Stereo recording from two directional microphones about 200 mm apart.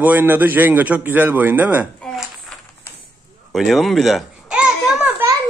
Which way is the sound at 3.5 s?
Centre (ahead or behind).